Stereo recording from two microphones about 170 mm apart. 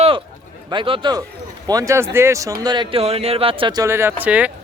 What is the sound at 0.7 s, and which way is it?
Speech, 30° right (ahead or behind).